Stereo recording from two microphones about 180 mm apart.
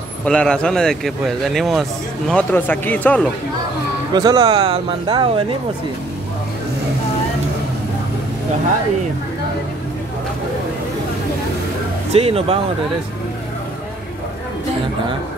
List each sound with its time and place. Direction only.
0.2 s a man's voice: 5° left (ahead or behind)
4.1 s speech: 20° right (ahead or behind)
12.1 s speech: 35° right (ahead or behind)